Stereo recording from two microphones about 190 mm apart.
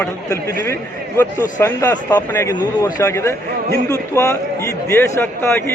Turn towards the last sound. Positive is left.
turn(degrees=15)  # may be behind; listen again after turning